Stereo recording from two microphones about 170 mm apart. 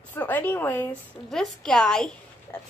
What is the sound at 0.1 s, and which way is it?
A woman's voice, 10° left (ahead or behind).